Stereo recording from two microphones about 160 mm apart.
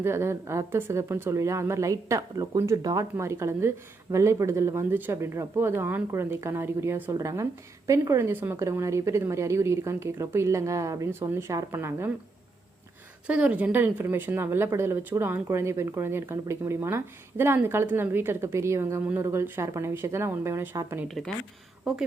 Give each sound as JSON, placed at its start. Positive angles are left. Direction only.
{"t": 0.0, "sound": "a woman's voice", "side_deg": -15}
{"t": 13.2, "sound": "a woman's voice", "side_deg": -5}
{"t": 21.1, "sound": "speech", "side_deg": 0}